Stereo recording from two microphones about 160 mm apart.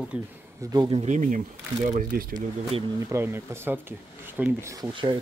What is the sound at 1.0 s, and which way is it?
Speech, 50° right (ahead or behind).